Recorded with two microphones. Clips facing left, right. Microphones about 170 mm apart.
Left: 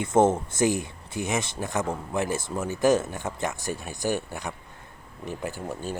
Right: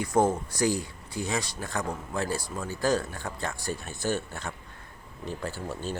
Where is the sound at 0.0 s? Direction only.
25° left (ahead or behind).